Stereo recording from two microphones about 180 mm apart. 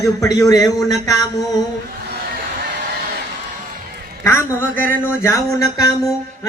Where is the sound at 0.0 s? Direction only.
20° left (ahead or behind).